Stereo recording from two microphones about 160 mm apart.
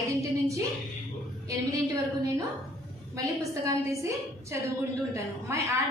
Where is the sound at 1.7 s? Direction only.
20° right (ahead or behind).